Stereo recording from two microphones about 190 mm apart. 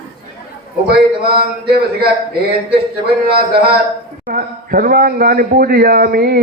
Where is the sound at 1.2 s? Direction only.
55° right (ahead or behind).